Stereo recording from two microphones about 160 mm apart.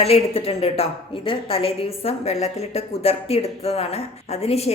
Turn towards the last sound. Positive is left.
turn(degrees=40)  # may be behind; listen again after turning